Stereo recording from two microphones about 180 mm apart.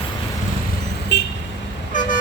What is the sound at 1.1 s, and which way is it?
Vehicle, 70° left (ahead or behind).